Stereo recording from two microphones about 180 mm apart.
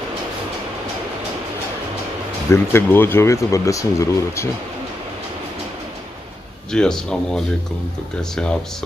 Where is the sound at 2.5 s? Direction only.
10° left (ahead or behind).